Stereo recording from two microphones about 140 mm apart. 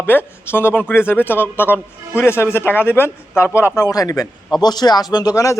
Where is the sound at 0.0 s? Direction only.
15° left (ahead or behind).